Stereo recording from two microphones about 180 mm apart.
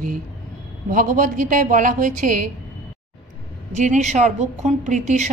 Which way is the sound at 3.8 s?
40° right (ahead or behind).